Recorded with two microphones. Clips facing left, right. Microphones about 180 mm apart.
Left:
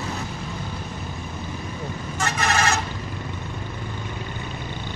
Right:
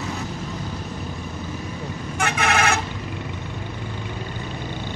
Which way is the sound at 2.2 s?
60° right (ahead or behind).